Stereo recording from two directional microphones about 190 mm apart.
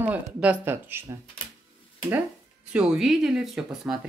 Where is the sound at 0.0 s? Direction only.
5° right (ahead or behind).